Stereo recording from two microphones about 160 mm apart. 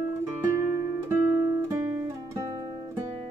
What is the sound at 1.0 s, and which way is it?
Guitar, 15° right (ahead or behind).